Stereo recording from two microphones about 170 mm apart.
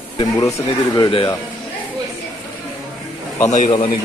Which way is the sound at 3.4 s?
45° left (ahead or behind).